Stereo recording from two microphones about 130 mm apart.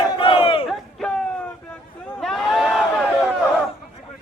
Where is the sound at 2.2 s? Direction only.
Centre (ahead or behind).